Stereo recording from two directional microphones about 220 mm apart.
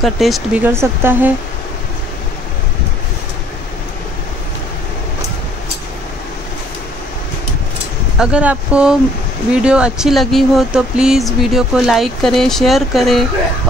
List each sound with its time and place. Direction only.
0.0 s speech: centre (ahead or behind)
8.2 s speech: 5° right (ahead or behind)